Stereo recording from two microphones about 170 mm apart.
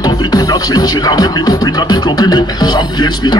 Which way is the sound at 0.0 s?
25° left (ahead or behind).